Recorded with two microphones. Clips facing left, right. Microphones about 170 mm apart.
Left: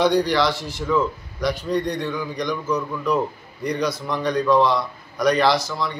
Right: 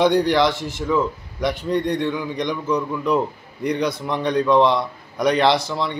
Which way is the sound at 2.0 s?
25° right (ahead or behind).